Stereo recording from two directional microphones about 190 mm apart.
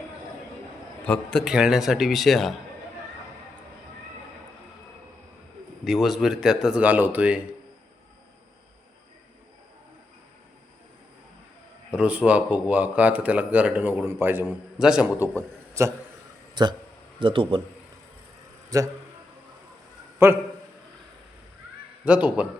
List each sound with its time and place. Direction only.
1.0 s speech: 5° left (ahead or behind)
5.8 s speech: centre (ahead or behind)
11.9 s speech: 5° right (ahead or behind)
15.8 s a man's voice: 15° right (ahead or behind)
18.7 s a man's voice: 20° right (ahead or behind)
20.2 s speech: 10° right (ahead or behind)
22.0 s speech: 5° right (ahead or behind)